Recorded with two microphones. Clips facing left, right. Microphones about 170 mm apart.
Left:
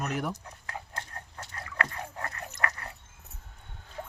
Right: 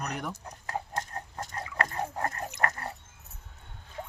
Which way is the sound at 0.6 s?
40° right (ahead or behind).